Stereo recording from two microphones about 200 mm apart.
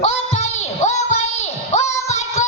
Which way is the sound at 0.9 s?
35° left (ahead or behind).